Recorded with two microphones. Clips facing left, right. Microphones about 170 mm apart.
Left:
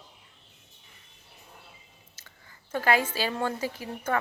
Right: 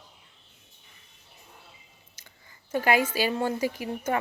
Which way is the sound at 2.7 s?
15° right (ahead or behind).